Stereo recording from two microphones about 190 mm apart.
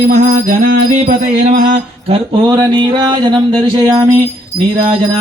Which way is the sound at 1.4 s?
40° right (ahead or behind).